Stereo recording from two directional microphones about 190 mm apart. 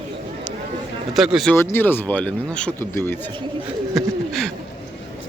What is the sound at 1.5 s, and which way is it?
A man's voice, 10° left (ahead or behind).